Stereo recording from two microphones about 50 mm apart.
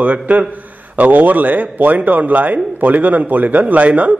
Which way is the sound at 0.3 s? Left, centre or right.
Right.